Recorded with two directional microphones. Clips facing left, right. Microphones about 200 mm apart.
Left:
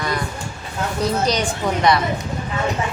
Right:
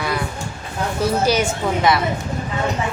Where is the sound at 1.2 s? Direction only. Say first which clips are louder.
Right 5 dB; 5° right (ahead or behind).